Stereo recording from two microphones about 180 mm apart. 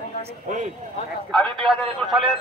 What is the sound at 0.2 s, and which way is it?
Speech, 40° right (ahead or behind).